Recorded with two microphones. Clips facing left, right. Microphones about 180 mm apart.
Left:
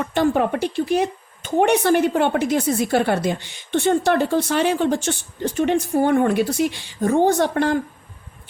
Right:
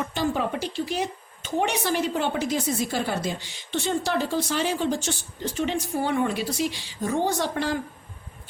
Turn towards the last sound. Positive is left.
turn(degrees=55)  # may be behind; listen again after turning